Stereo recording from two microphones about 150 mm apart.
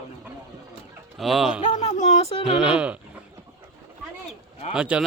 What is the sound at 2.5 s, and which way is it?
Speech, 5° right (ahead or behind).